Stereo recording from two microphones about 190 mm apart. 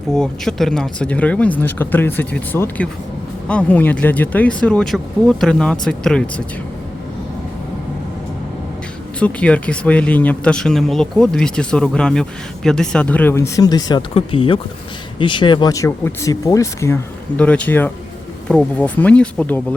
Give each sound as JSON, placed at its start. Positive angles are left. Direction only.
{"t": 0.1, "sound": "speech", "side_deg": 0}
{"t": 9.1, "sound": "speech", "side_deg": 5}